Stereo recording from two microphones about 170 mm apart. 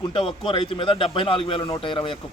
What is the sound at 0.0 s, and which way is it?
A man's voice, 30° left (ahead or behind).